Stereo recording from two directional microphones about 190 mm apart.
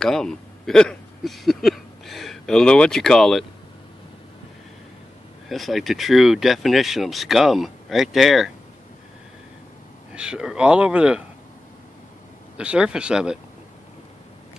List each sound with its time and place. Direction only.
0.0 s speech: 5° left (ahead or behind)
5.5 s speech: centre (ahead or behind)
10.1 s speech: 5° right (ahead or behind)
12.5 s speech: 5° right (ahead or behind)